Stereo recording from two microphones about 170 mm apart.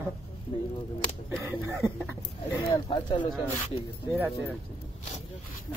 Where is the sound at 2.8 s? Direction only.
30° left (ahead or behind).